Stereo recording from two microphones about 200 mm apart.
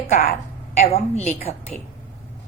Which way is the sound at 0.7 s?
35° left (ahead or behind).